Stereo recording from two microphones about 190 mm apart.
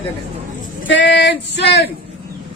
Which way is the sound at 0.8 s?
70° left (ahead or behind).